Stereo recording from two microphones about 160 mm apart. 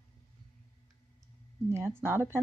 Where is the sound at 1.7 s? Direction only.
15° right (ahead or behind).